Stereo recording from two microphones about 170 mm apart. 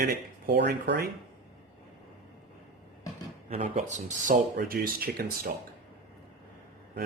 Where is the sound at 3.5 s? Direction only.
40° right (ahead or behind); by 5.2 s 60° right (ahead or behind).